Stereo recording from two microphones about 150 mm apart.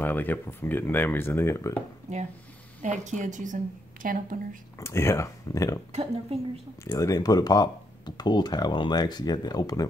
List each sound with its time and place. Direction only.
0.0 s speech: 10° left (ahead or behind)
2.1 s a woman's voice: 50° right (ahead or behind); by 4.6 s 65° right (ahead or behind)
4.7 s speech: 20° left (ahead or behind)
6.3 s speech: 40° right (ahead or behind)
6.8 s speech: 20° left (ahead or behind)